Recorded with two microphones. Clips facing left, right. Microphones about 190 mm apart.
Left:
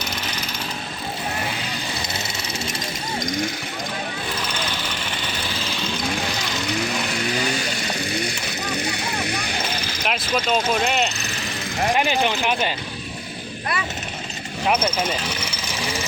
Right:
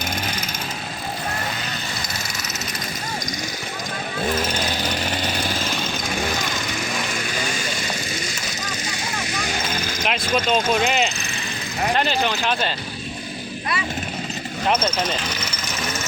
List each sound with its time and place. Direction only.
4.4 s vehicle: 45° right (ahead or behind)
8.1 s vehicle: 60° left (ahead or behind)
9.2 s a sound: 60° left (ahead or behind)
10.1 s speech: centre (ahead or behind)
11.9 s speech: 15° left (ahead or behind)
14.7 s a sound: 10° left (ahead or behind)